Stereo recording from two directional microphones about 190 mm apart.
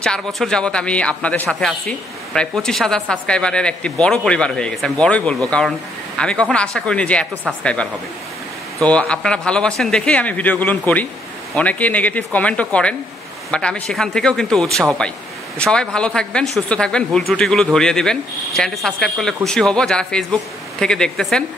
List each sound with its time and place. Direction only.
0.0 s speech: 5° left (ahead or behind)